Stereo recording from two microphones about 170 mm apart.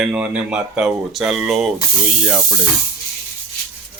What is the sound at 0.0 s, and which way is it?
Speech, 5° right (ahead or behind).